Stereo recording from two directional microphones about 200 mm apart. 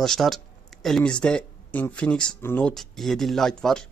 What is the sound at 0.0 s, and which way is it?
Speech, centre (ahead or behind).